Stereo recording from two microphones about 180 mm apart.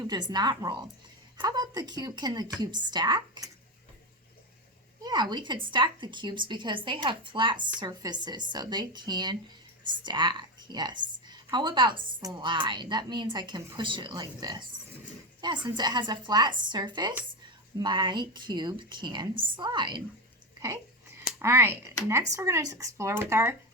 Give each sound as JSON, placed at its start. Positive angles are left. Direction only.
{"t": 0.0, "sound": "a woman's voice", "side_deg": -25}
{"t": 5.0, "sound": "a woman's voice", "side_deg": -25}
{"t": 21.2, "sound": "speech", "side_deg": -15}